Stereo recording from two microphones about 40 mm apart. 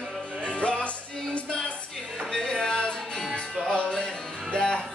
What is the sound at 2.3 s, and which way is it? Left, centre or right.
Music, centre.